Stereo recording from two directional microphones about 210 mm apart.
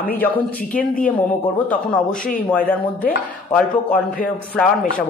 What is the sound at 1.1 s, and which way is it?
Speech, 5° left (ahead or behind).